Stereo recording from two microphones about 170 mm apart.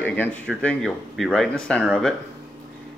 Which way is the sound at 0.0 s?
10° left (ahead or behind).